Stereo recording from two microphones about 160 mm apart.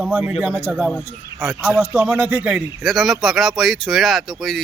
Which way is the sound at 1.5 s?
Centre (ahead or behind).